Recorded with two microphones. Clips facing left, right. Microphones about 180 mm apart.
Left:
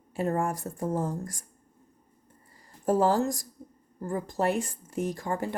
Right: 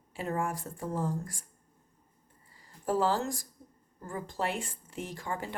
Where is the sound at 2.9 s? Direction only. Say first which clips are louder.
Left 5 dB; 45° left (ahead or behind).